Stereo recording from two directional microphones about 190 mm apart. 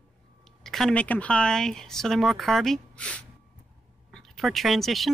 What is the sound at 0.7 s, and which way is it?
Speech, centre (ahead or behind).